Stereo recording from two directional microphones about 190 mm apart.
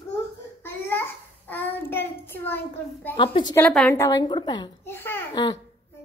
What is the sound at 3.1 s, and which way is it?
Speech, 25° left (ahead or behind).